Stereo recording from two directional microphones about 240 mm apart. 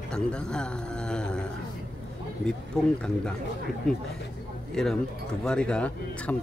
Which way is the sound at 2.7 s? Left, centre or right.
Centre.